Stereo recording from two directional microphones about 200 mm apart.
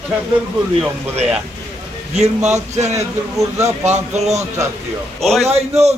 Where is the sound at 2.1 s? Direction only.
35° right (ahead or behind).